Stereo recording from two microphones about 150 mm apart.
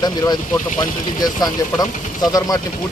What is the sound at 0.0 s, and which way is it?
Speech, 25° left (ahead or behind).